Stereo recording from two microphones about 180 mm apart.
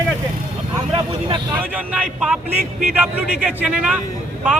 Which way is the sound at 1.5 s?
5° right (ahead or behind).